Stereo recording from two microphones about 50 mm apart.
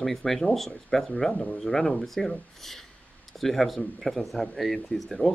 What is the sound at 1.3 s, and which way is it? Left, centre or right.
Speech, left.